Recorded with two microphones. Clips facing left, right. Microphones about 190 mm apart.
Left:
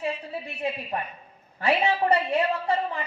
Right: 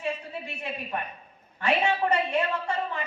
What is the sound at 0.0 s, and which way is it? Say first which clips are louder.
A woman's voice: left 2 dB; 35° left (ahead or behind).